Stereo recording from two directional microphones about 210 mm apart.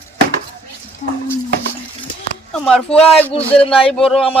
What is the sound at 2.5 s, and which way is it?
Speech, 5° left (ahead or behind).